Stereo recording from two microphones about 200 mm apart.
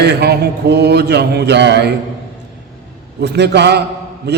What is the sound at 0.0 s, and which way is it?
A man's voice, 55° right (ahead or behind).